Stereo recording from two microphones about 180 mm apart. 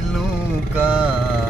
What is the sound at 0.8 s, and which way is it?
Music, 5° right (ahead or behind).